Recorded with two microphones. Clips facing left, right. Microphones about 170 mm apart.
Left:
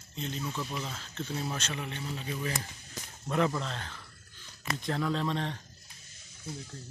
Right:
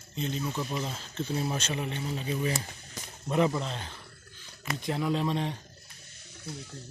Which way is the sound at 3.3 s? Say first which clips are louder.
Right 3 dB; 15° right (ahead or behind).